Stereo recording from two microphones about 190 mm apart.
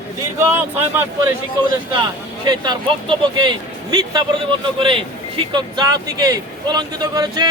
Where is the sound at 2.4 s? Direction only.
20° right (ahead or behind).